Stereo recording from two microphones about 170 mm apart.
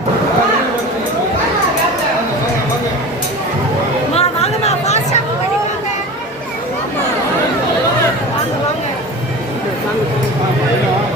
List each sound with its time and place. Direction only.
4.1 s chatter: 35° left (ahead or behind)